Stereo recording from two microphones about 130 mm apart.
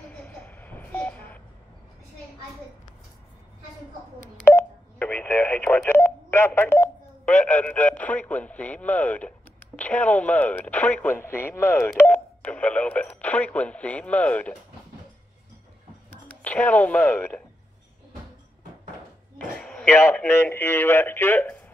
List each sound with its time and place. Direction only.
0.1 s a sound: 10° left (ahead or behind)
4.5 s telephone dialing: 15° left (ahead or behind)
9.8 s speech: 10° left (ahead or behind)
16.1 s speech: 10° left (ahead or behind)
19.5 s radio: 5° left (ahead or behind)
19.9 s a man's voice: 20° left (ahead or behind)